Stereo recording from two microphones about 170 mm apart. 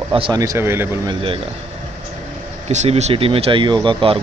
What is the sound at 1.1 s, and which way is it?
Speech, 30° right (ahead or behind).